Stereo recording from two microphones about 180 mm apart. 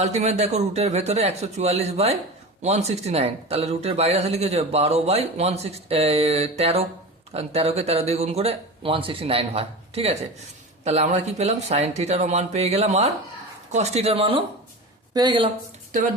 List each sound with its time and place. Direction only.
0.0 s speech: 40° right (ahead or behind)